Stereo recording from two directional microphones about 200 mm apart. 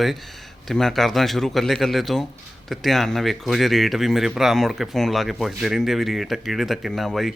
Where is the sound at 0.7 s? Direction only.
Centre (ahead or behind).